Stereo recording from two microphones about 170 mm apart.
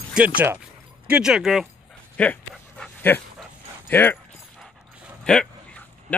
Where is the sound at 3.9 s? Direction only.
10° left (ahead or behind).